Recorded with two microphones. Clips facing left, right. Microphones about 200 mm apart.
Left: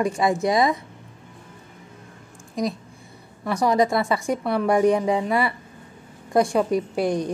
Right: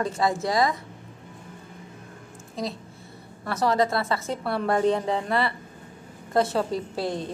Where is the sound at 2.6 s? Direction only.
15° left (ahead or behind).